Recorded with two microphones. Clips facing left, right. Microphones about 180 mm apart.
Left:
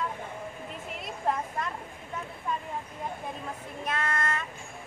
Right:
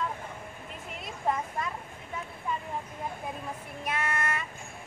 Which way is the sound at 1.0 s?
Centre (ahead or behind).